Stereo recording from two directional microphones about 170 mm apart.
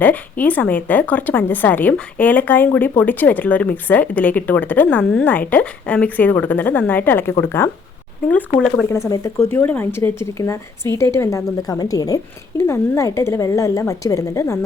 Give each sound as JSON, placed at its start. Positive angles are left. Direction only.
{"t": 0.0, "sound": "a woman's voice", "side_deg": 10}
{"t": 8.9, "sound": "a woman's voice", "side_deg": 20}